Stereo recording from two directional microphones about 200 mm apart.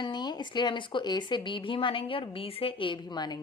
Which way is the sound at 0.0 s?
20° left (ahead or behind).